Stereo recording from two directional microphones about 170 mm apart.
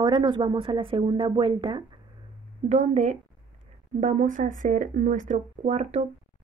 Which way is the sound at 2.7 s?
45° right (ahead or behind).